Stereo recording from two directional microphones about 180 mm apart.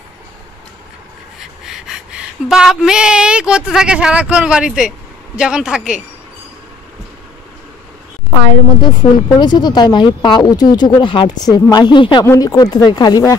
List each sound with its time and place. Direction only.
1.7 s a woman's voice: 5° right (ahead or behind)
9.0 s speech: 15° left (ahead or behind)